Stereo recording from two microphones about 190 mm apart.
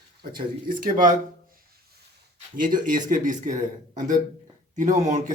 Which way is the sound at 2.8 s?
45° right (ahead or behind).